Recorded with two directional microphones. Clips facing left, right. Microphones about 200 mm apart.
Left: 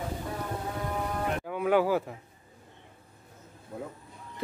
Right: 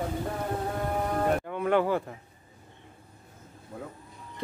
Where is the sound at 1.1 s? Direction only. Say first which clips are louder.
Right 7 dB; 45° right (ahead or behind).